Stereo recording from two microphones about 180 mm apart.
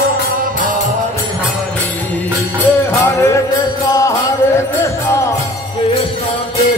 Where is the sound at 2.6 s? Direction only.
15° left (ahead or behind).